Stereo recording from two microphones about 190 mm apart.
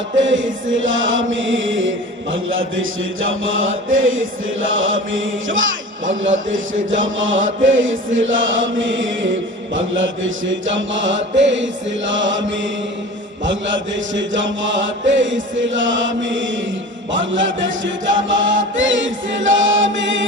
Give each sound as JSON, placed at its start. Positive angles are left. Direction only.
{"t": 0.2, "sound": "chant", "side_deg": -80}